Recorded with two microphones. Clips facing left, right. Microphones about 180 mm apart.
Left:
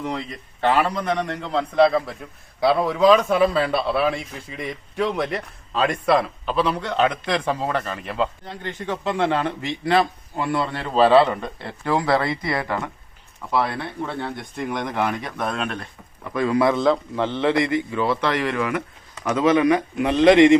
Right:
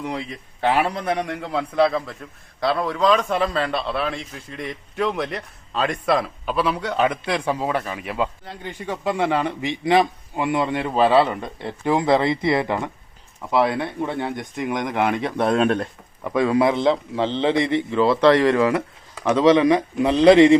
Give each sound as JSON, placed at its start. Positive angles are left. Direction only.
{"t": 0.0, "sound": "a man's voice", "side_deg": -10}
{"t": 16.3, "sound": "a man's voice", "side_deg": -20}